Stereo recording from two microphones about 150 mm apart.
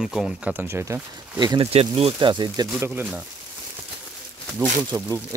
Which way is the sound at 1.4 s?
35° right (ahead or behind).